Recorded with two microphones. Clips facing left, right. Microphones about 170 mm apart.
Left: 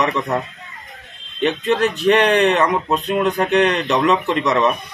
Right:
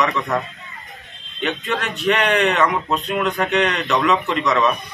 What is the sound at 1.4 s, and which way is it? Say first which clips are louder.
Speech: left 6 dB; 35° left (ahead or behind).